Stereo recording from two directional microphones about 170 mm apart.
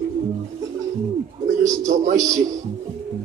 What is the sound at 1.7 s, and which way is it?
Speech, 20° right (ahead or behind).